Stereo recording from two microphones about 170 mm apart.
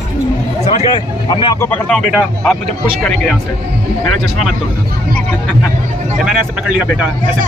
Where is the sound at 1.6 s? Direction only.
10° left (ahead or behind).